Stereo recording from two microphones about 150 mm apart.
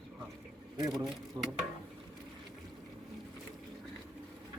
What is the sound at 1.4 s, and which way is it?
Speech, centre (ahead or behind).